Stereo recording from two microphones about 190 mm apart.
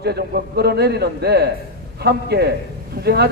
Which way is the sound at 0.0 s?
60° right (ahead or behind).